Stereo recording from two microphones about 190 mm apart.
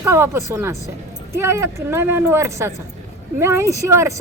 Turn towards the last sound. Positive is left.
turn(degrees=-15)  # may be behind; listen again after turning